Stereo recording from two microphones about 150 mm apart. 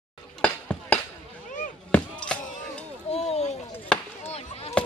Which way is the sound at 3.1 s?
45° left (ahead or behind).